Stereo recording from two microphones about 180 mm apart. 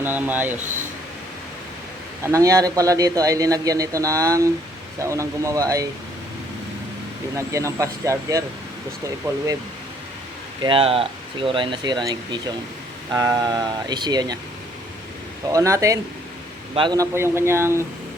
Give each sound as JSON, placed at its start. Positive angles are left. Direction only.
{"t": 0.0, "sound": "speech", "side_deg": -10}
{"t": 2.2, "sound": "a man's voice", "side_deg": -15}
{"t": 7.3, "sound": "speech", "side_deg": -15}
{"t": 10.6, "sound": "a man's voice", "side_deg": -30}
{"t": 15.4, "sound": "speech", "side_deg": -20}